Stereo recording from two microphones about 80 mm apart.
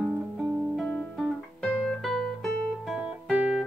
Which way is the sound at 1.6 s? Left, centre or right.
Centre.